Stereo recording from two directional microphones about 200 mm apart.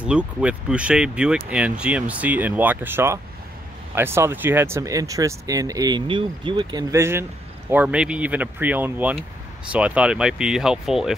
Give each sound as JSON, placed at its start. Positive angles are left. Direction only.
{"t": 0.0, "sound": "speech", "side_deg": -5}